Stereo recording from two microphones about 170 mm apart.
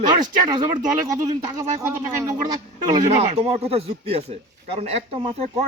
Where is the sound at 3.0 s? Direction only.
40° right (ahead or behind).